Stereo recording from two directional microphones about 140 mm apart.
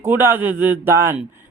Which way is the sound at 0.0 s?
15° right (ahead or behind).